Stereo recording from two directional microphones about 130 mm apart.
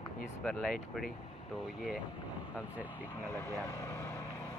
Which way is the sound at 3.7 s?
20° left (ahead or behind).